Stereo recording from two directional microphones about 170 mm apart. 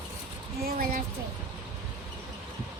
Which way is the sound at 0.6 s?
60° right (ahead or behind).